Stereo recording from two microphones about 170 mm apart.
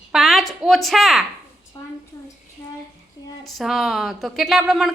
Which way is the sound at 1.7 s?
25° left (ahead or behind).